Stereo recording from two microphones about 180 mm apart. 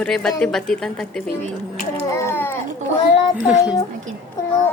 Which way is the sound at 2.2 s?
15° left (ahead or behind).